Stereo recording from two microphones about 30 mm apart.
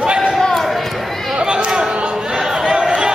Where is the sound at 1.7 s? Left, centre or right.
Right.